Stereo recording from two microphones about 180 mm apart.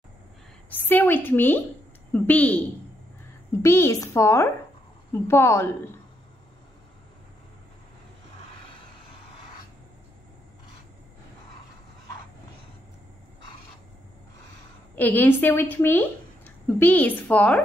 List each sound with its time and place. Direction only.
0.7 s a woman's voice: 10° left (ahead or behind)
3.6 s a woman's voice: 15° left (ahead or behind)
15.0 s a woman's voice: 10° left (ahead or behind)